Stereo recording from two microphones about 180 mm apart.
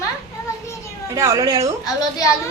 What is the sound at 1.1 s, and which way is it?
Speech, 15° right (ahead or behind).